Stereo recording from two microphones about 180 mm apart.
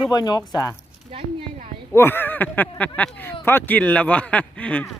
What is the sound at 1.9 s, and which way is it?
Speech, 10° left (ahead or behind).